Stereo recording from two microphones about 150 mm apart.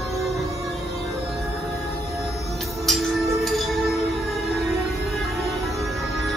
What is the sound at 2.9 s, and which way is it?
Music, centre (ahead or behind).